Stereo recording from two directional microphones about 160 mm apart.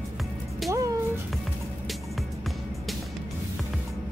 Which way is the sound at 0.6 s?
Centre (ahead or behind).